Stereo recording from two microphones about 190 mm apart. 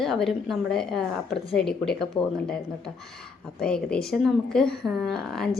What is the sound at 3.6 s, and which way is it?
A woman's voice, 5° left (ahead or behind).